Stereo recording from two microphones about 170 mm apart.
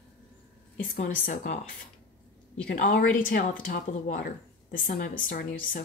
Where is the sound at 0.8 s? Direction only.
60° left (ahead or behind).